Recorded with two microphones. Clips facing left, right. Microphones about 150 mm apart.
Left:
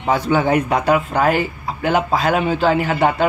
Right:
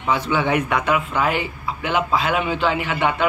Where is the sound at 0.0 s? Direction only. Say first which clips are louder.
Left 4 dB; 40° left (ahead or behind).